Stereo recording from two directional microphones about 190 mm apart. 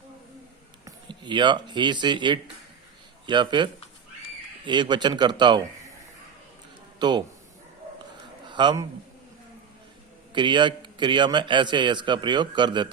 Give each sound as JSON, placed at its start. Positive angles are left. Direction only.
{"t": 0.9, "sound": "a man's voice", "side_deg": -25}
{"t": 7.0, "sound": "a man's voice", "side_deg": -25}
{"t": 8.4, "sound": "a man's voice", "side_deg": -25}
{"t": 10.3, "sound": "a man's voice", "side_deg": -25}